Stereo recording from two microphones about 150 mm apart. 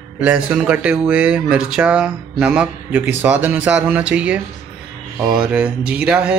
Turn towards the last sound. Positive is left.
turn(degrees=-5)  # may be behind; listen again after turning